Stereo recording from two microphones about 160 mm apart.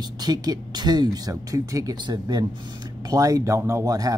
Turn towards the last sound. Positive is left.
turn(degrees=-20)  # may be behind; listen again after turning